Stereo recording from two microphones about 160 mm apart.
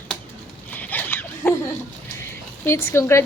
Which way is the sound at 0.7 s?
10° left (ahead or behind).